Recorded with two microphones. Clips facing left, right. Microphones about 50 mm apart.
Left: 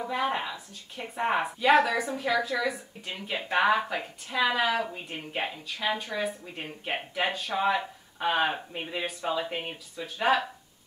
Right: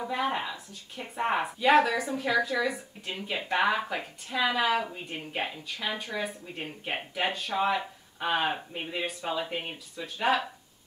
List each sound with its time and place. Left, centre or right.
0.0 s a woman's voice: centre